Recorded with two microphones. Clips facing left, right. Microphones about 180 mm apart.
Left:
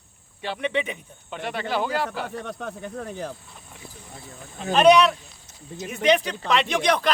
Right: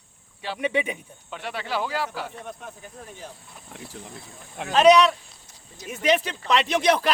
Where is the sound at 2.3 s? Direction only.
70° left (ahead or behind).